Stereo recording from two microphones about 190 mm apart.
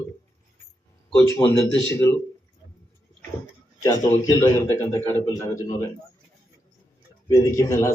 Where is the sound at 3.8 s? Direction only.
15° left (ahead or behind).